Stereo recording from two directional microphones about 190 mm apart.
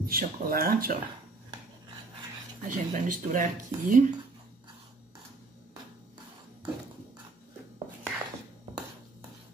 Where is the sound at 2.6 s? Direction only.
45° right (ahead or behind).